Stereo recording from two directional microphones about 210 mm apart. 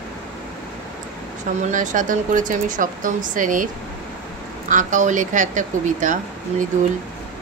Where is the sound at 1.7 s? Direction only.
40° right (ahead or behind).